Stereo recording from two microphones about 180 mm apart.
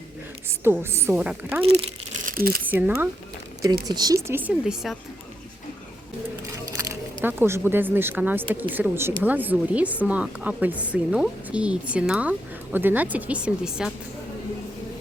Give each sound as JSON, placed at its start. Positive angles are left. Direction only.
{"t": 0.4, "sound": "a woman's voice", "side_deg": -15}
{"t": 1.6, "sound": "speech", "side_deg": -30}
{"t": 2.2, "sound": "crumpling", "side_deg": -55}
{"t": 2.6, "sound": "a woman's voice", "side_deg": -10}
{"t": 6.4, "sound": "a sound", "side_deg": -15}
{"t": 7.2, "sound": "a woman's voice", "side_deg": -10}